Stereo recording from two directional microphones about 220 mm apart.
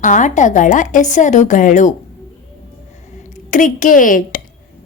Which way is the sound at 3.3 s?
35° left (ahead or behind).